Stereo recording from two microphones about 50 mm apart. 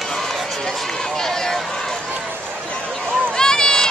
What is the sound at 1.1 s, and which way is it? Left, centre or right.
Speech, centre.